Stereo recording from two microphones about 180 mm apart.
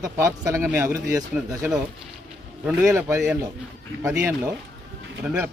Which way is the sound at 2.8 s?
15° right (ahead or behind).